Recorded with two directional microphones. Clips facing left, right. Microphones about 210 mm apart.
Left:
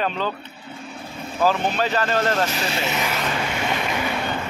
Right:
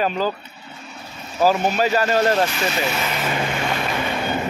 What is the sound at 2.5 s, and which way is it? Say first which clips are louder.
Speech: right 2 dB; 35° left (ahead or behind).